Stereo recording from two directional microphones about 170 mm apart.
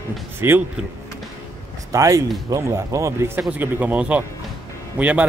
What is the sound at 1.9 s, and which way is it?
Speech, 20° right (ahead or behind).